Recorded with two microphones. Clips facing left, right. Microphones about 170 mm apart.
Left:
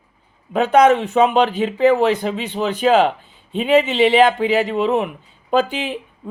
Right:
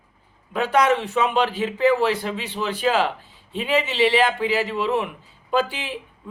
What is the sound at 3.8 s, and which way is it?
Speech, 20° left (ahead or behind).